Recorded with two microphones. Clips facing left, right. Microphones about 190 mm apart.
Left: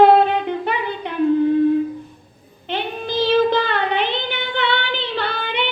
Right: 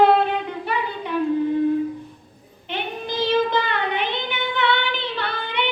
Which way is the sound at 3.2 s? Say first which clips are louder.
Left 4 dB; 60° left (ahead or behind).